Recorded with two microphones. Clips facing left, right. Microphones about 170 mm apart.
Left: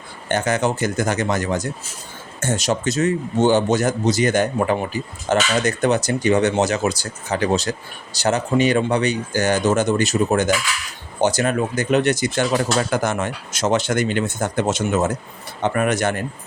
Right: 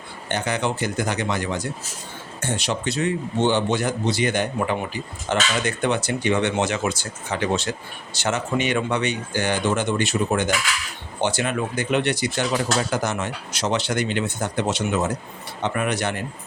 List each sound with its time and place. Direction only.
0.3 s a man's voice: 45° left (ahead or behind)